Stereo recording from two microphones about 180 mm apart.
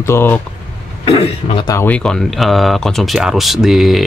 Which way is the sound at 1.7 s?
10° left (ahead or behind).